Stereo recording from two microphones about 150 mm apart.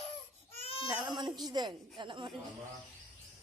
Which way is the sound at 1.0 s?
30° right (ahead or behind).